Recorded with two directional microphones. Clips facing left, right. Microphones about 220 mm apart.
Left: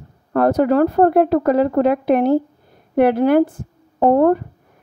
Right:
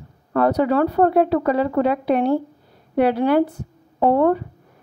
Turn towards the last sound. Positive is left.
turn(degrees=45)  # may be behind; listen again after turning